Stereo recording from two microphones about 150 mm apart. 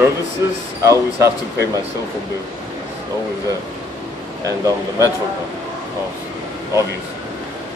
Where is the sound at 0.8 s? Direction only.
20° right (ahead or behind).